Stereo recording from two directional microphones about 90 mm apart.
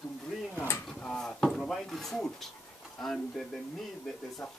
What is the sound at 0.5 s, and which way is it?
Speech, 25° left (ahead or behind).